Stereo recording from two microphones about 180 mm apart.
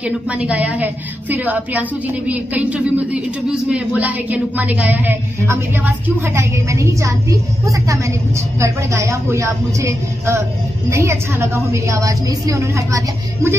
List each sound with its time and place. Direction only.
0.0 s a woman's voice: 5° right (ahead or behind)